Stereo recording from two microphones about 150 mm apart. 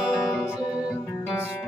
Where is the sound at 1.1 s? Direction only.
15° left (ahead or behind).